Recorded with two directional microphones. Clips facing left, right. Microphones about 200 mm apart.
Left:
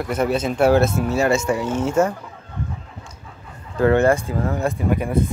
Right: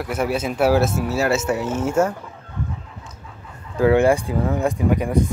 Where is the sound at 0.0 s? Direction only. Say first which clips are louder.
Left 2 dB; 5° right (ahead or behind).